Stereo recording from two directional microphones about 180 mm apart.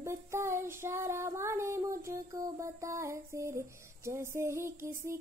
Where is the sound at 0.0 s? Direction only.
15° right (ahead or behind).